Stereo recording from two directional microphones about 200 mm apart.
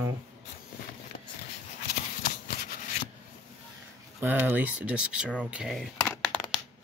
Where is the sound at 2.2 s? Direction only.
50° left (ahead or behind).